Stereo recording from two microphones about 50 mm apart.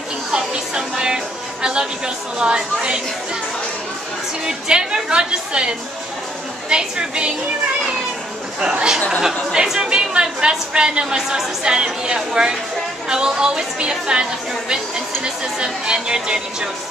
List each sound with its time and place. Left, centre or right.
0.3 s music: centre
4.5 s a woman's voice: centre
9.2 s a woman's voice: centre
15.2 s a woman's voice: centre